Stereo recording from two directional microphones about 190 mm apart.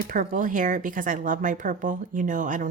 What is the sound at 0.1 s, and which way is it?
A woman's voice, 45° right (ahead or behind).